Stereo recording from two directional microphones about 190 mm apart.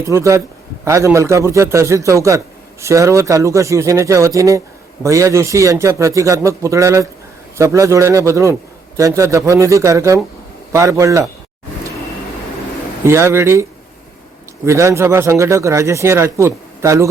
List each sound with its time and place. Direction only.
0.0 s a man's voice: 15° right (ahead or behind)
13.1 s a man's voice: 15° right (ahead or behind)